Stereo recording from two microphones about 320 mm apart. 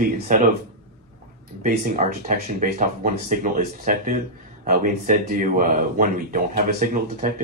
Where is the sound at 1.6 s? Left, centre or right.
Right.